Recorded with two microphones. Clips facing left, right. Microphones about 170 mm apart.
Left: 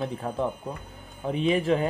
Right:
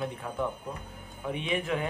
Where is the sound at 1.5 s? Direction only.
35° left (ahead or behind).